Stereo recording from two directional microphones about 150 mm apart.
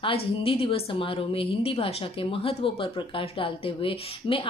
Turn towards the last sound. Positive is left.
turn(degrees=35)  # may be behind; listen again after turning